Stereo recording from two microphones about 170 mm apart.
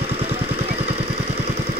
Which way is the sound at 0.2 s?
35° right (ahead or behind).